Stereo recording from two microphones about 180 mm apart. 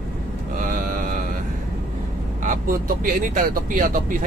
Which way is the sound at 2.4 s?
45° right (ahead or behind).